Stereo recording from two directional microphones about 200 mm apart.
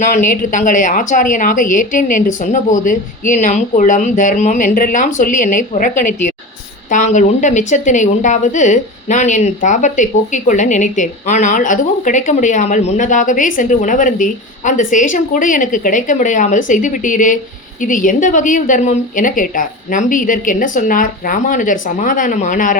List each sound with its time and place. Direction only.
0.0 s a woman's voice: 40° left (ahead or behind)